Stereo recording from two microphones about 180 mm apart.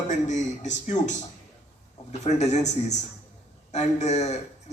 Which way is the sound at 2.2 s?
40° left (ahead or behind).